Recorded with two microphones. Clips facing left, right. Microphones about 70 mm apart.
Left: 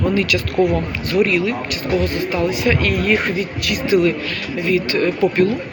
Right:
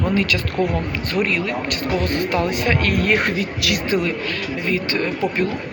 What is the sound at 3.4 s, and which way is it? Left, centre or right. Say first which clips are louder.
Speech: even; right.